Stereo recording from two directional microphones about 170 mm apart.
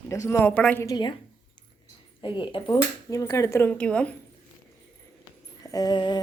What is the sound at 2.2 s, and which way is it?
Speech, 30° left (ahead or behind).